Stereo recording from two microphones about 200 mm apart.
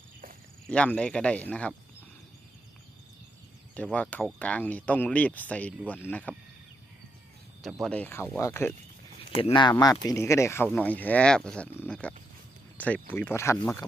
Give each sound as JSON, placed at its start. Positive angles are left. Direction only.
{"t": 0.7, "sound": "speech", "side_deg": 5}
{"t": 3.8, "sound": "speech", "side_deg": 5}
{"t": 7.6, "sound": "speech", "side_deg": 0}